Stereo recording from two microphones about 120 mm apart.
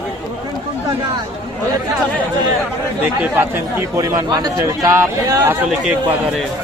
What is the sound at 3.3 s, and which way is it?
Speech, 20° right (ahead or behind).